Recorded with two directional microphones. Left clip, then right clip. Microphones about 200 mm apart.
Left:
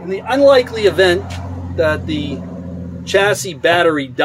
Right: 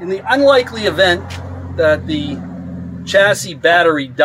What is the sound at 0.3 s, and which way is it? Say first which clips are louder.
Speech: left 1 dB; 5° left (ahead or behind).